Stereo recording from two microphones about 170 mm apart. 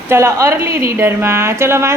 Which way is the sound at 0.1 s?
15° right (ahead or behind).